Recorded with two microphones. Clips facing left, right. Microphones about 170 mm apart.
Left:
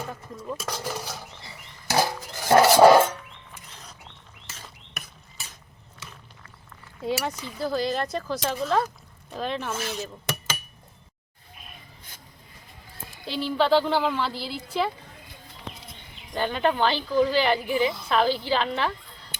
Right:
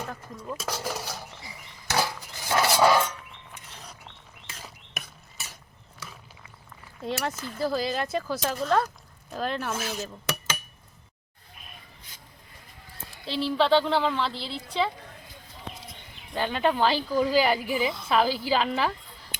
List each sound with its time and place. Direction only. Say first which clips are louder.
0.0 s cutlery: left 1 dB; 5° left (ahead or behind)
1.9 s pig: left 3 dB; 40° left (ahead or behind)
2.4 s music: left 7 dB; 50° left (ahead or behind)
3.5 s mechanisms: right 3 dB; centre (ahead or behind)
4.4 s bird: right 1 dB; centre (ahead or behind)
7.0 s speech: left 2 dB; centre (ahead or behind)
13.2 s speech: even; centre (ahead or behind)
16.3 s speech: left 1 dB; centre (ahead or behind)